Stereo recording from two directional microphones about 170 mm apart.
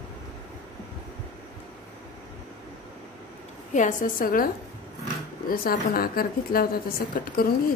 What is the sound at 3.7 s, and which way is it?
A woman's voice, 50° left (ahead or behind).